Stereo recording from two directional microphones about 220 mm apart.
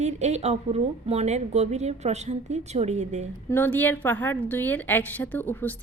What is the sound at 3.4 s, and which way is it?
A woman's voice, 10° left (ahead or behind).